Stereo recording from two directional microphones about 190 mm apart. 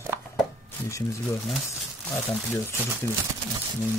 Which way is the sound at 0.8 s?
15° left (ahead or behind).